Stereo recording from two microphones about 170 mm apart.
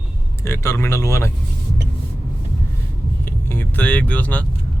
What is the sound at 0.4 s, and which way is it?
Speech, 15° left (ahead or behind).